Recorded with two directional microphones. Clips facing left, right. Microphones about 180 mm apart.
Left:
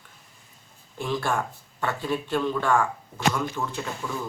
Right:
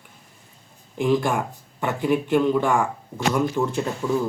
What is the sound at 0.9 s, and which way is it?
Speech, 15° right (ahead or behind).